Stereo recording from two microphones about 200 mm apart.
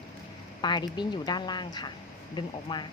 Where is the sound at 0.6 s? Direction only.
20° left (ahead or behind).